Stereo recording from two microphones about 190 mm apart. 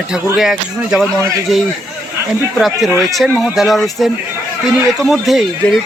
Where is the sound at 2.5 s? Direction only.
Centre (ahead or behind).